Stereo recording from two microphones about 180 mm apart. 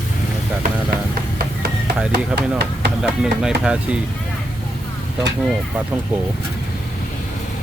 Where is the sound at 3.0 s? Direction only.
5° right (ahead or behind).